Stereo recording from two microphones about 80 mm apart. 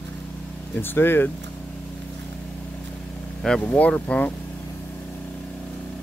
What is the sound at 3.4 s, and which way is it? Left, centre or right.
Speech, centre.